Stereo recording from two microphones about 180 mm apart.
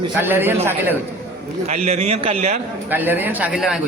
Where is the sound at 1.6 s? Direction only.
40° right (ahead or behind).